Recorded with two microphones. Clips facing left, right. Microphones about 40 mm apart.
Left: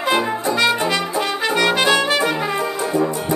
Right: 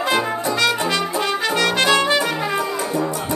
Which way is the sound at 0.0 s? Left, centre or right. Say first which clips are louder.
Left 1 dB; centre.